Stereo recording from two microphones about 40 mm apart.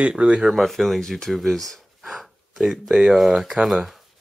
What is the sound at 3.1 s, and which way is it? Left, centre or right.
Speech, centre.